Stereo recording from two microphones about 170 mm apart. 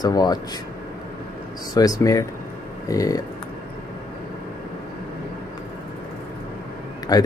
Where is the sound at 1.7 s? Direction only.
20° left (ahead or behind).